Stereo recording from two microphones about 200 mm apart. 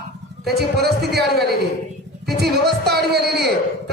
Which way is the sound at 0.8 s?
55° right (ahead or behind).